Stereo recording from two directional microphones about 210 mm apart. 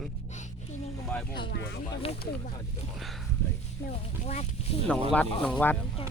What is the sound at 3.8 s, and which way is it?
Speech, 30° left (ahead or behind).